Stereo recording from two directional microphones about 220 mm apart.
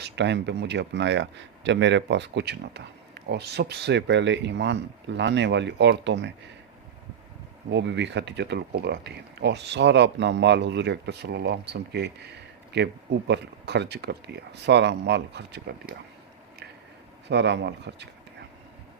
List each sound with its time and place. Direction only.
0.0 s speech: 50° right (ahead or behind)
7.7 s speech: 50° right (ahead or behind)
17.2 s speech: 50° right (ahead or behind)